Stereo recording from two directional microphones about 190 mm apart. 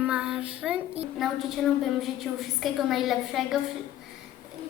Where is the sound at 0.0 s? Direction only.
5° right (ahead or behind).